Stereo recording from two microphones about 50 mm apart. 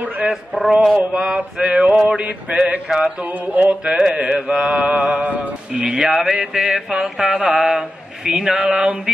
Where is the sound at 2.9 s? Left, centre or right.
Centre.